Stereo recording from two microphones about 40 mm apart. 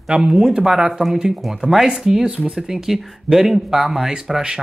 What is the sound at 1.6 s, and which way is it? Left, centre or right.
Speech, centre.